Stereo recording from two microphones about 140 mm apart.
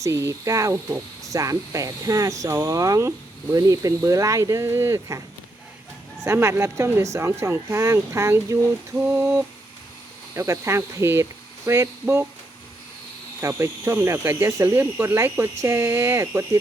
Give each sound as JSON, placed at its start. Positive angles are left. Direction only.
{"t": 0.0, "sound": "speech", "side_deg": -20}
{"t": 6.2, "sound": "speech", "side_deg": -20}
{"t": 13.4, "sound": "speech", "side_deg": -20}